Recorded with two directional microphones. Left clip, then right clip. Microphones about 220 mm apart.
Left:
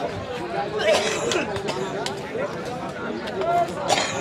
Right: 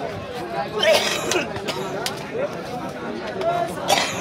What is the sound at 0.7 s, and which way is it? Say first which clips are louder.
Speech: right 3 dB; 40° right (ahead or behind).